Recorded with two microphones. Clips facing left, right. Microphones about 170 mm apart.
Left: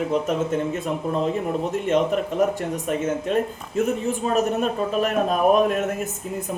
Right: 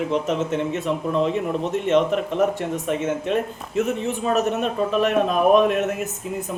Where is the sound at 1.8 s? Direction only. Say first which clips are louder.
Right 2 dB; 40° left (ahead or behind).